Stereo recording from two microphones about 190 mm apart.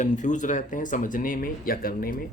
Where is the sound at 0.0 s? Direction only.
40° left (ahead or behind).